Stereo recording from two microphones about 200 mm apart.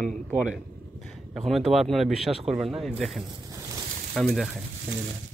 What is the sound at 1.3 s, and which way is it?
Speech, centre (ahead or behind).